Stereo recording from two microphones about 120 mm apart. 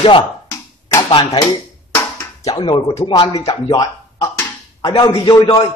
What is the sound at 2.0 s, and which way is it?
Music, 25° left (ahead or behind).